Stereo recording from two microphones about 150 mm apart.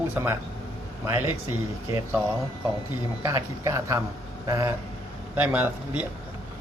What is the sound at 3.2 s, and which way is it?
Speech, 20° right (ahead or behind).